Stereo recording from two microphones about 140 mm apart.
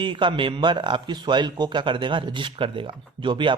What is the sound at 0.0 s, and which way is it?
A man's voice, 35° right (ahead or behind).